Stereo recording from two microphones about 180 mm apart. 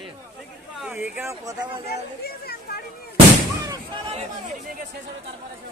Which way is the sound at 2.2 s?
60° left (ahead or behind).